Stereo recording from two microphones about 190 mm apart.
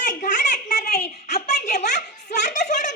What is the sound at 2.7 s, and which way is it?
Giggle, 40° left (ahead or behind).